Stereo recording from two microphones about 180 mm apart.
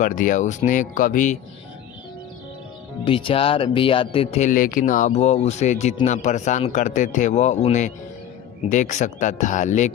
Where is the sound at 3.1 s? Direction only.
30° left (ahead or behind).